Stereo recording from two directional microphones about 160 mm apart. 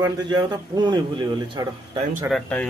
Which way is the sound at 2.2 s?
5° left (ahead or behind).